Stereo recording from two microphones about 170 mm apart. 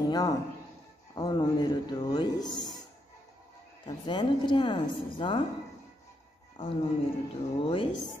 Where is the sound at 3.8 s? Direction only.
30° left (ahead or behind).